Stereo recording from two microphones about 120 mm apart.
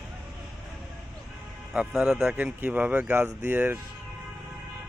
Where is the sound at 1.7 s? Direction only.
5° right (ahead or behind).